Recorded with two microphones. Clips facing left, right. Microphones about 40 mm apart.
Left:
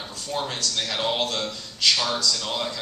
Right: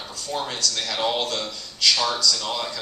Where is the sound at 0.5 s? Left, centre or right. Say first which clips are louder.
Right 1 dB; left.